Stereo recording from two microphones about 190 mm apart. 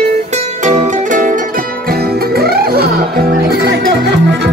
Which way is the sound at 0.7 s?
40° right (ahead or behind).